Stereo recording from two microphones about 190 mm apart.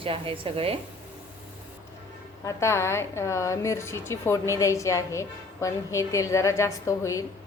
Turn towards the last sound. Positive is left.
turn(degrees=15)  # may be behind; listen again after turning